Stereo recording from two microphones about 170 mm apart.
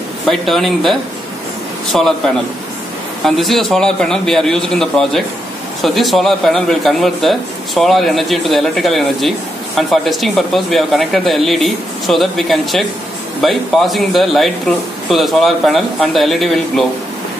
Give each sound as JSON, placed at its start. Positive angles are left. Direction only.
{"t": 0.3, "sound": "a man's voice", "side_deg": 0}